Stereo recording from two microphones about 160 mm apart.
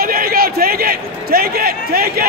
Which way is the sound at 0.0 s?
70° right (ahead or behind).